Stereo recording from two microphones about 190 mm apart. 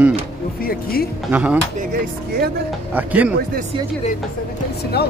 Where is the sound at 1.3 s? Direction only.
5° right (ahead or behind).